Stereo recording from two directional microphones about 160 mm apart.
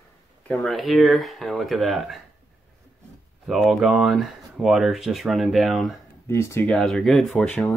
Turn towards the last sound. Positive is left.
turn(degrees=0)  # may be behind; listen again after turning